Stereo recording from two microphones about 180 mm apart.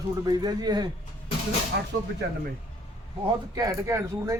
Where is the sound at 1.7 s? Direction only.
65° right (ahead or behind).